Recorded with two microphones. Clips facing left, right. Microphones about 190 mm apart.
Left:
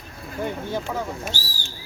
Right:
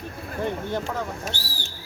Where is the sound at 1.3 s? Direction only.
60° right (ahead or behind).